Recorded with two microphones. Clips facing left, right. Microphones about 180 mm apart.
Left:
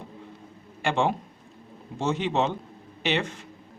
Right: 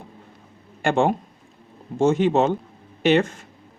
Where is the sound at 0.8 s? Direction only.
50° right (ahead or behind).